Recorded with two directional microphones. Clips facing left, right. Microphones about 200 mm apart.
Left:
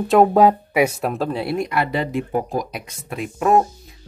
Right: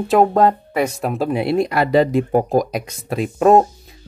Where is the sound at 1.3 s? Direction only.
20° right (ahead or behind).